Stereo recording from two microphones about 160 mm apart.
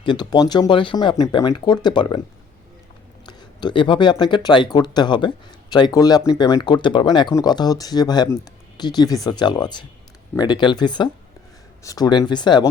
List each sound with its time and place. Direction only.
0.0 s speech: 30° left (ahead or behind)
3.2 s speech: 30° left (ahead or behind)